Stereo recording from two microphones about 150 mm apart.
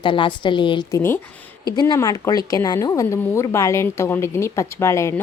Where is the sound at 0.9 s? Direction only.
15° left (ahead or behind).